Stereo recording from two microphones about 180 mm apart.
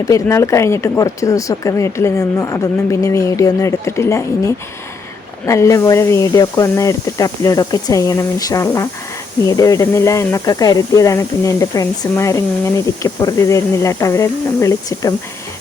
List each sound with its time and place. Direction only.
0.0 s speech: 15° left (ahead or behind)